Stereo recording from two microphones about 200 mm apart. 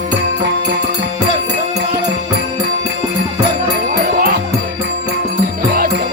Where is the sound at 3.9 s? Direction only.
50° right (ahead or behind).